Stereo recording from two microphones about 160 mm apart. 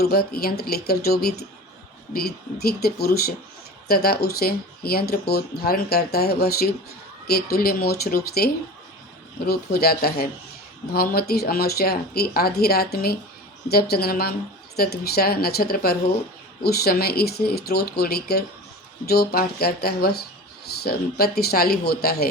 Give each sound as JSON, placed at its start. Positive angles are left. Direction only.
{"t": 0.0, "sound": "speech", "side_deg": 75}
{"t": 9.5, "sound": "speech", "side_deg": 75}